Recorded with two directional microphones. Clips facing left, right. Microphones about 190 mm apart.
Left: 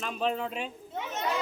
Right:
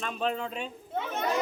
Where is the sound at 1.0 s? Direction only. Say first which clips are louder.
Right 1 dB; 55° right (ahead or behind).